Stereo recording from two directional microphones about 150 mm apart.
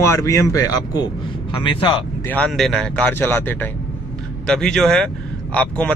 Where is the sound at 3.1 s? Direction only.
15° left (ahead or behind).